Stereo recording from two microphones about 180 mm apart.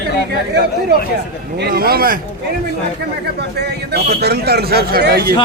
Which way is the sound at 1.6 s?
55° right (ahead or behind).